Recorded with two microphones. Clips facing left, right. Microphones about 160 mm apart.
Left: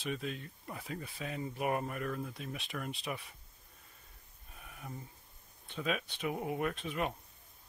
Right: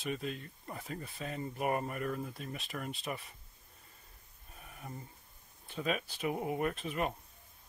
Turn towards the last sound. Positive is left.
turn(degrees=0)  # may be behind; listen again after turning